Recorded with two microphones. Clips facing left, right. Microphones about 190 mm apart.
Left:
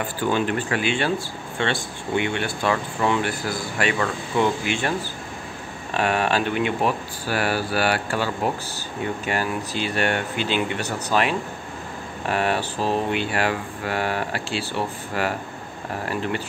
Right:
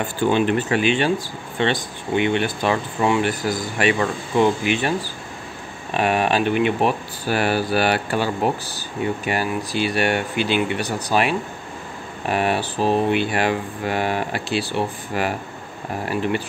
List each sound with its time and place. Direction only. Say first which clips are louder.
0.3 s speech: right 4 dB; 20° right (ahead or behind)
5.9 s speech: right 2 dB; 15° right (ahead or behind)